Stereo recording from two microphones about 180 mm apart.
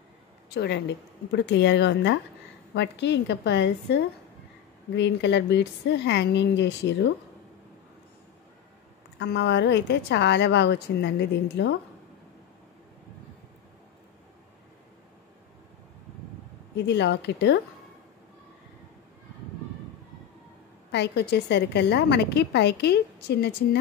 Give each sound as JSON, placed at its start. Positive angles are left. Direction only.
{"t": 0.6, "sound": "a woman's voice", "side_deg": 70}
{"t": 9.2, "sound": "a woman's voice", "side_deg": 70}
{"t": 16.7, "sound": "a woman's voice", "side_deg": 70}
{"t": 20.9, "sound": "a woman's voice", "side_deg": 70}